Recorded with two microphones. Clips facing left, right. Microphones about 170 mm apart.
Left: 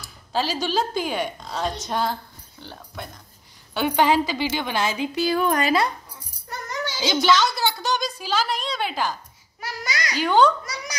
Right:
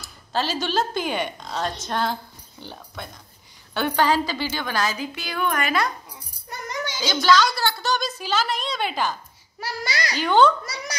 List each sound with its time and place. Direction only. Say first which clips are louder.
0.0 s a woman's voice: left 1 dB; 10° left (ahead or behind)
3.7 s a woman's voice: left 1 dB; 15° left (ahead or behind); by 5.9 s 30° left (ahead or behind)
6.7 s child singing: even; 15° right (ahead or behind)
7.0 s a woman's voice: even; 20° left (ahead or behind); by 9.1 s 5° left (ahead or behind)
9.6 s a sound: right 2 dB; 30° right (ahead or behind)
10.1 s a woman's voice: even; 5° left (ahead or behind)
10.6 s speech: right 1 dB; 30° right (ahead or behind)